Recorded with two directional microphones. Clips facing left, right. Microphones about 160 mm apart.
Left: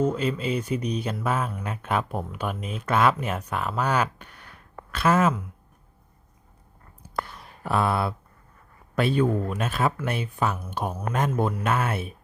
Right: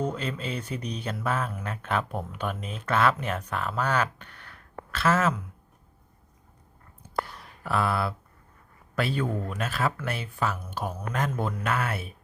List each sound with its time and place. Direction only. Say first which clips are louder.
0.0 s speech: left 6 dB; 5° left (ahead or behind)
7.6 s speech: left 3 dB; 25° left (ahead or behind)